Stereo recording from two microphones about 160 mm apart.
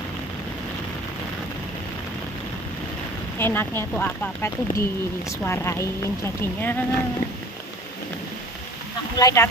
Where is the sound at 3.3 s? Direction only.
15° left (ahead or behind).